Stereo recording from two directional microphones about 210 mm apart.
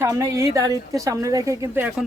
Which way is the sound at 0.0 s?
15° right (ahead or behind).